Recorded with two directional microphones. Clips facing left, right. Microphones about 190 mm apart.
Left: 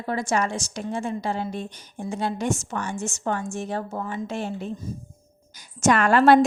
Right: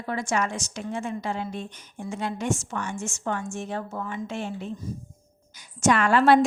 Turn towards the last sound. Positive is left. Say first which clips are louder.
# left 2 dB
turn(degrees=45)  # may be behind; listen again after turning